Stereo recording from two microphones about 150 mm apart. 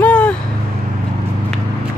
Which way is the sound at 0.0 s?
10° left (ahead or behind).